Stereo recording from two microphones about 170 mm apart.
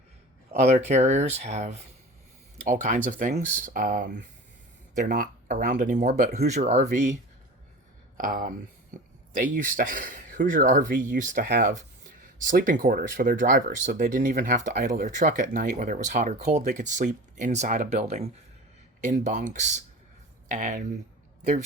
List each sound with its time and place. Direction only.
0.5 s speech: 40° right (ahead or behind)
8.2 s speech: 50° right (ahead or behind)
11.4 s speech: 70° right (ahead or behind)
12.4 s speech: 50° right (ahead or behind)